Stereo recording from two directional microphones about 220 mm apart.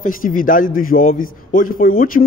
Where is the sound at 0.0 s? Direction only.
40° left (ahead or behind).